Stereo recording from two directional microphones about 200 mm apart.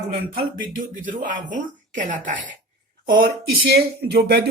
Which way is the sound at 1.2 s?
40° right (ahead or behind).